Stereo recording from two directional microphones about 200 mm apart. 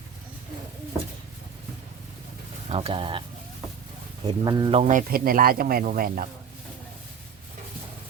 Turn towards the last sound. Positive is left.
turn(degrees=-45)  # may be behind; listen again after turning